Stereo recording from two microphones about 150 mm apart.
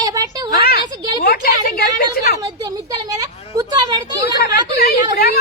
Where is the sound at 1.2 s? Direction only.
80° left.